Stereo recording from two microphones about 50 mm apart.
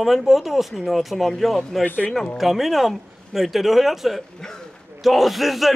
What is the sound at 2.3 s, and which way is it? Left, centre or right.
A man's voice, centre.